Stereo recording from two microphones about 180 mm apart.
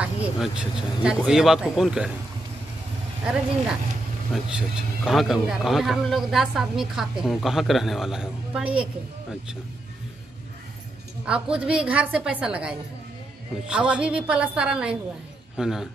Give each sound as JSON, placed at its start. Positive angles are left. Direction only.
{"t": 0.0, "sound": "a man's voice", "side_deg": -5}
{"t": 4.3, "sound": "a man's voice", "side_deg": -5}
{"t": 11.2, "sound": "a man's voice", "side_deg": -5}